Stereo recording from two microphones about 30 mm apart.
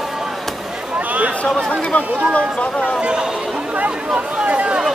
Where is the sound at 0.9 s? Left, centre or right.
Right.